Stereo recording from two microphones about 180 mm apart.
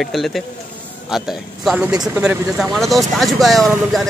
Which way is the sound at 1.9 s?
20° right (ahead or behind).